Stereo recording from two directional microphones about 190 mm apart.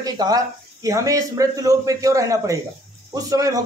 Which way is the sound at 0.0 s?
20° right (ahead or behind).